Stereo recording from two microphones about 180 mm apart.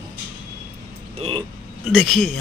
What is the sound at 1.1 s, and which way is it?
Speech, 30° right (ahead or behind).